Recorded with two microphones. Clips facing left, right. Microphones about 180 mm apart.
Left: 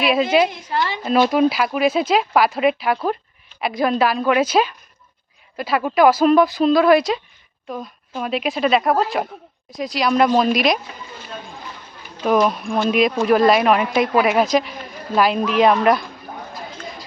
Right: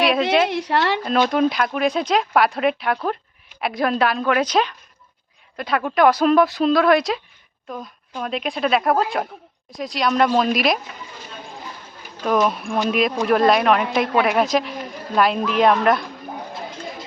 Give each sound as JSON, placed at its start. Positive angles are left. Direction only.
{"t": 0.4, "sound": "a woman's voice", "side_deg": -70}
{"t": 1.0, "sound": "speech", "side_deg": 5}
{"t": 12.2, "sound": "speech", "side_deg": 5}